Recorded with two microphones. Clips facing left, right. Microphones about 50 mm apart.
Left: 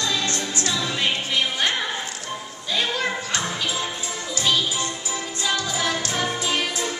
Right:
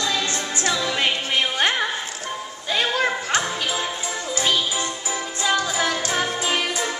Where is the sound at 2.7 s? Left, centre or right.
Right.